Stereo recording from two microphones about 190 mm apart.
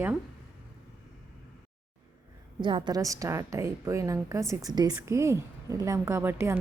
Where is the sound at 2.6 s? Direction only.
25° right (ahead or behind).